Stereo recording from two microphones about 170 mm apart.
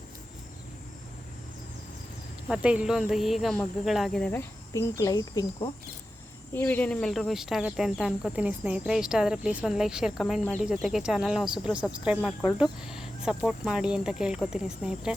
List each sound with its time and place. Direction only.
2.5 s speech: 5° right (ahead or behind)